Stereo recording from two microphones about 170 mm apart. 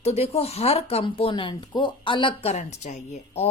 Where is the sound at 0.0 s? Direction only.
40° left (ahead or behind).